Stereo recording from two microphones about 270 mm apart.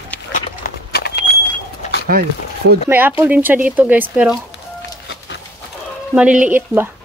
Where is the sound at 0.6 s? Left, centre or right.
Left.